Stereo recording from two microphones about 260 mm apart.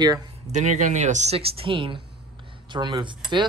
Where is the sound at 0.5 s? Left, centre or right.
Right.